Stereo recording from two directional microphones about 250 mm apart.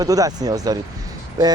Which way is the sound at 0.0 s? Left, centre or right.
Centre.